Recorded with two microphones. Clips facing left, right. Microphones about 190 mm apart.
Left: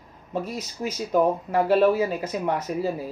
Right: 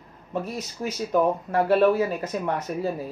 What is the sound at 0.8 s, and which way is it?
Speech, 10° left (ahead or behind).